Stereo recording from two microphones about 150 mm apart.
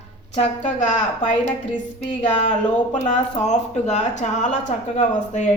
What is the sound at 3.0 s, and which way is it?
A woman's voice, 50° left (ahead or behind).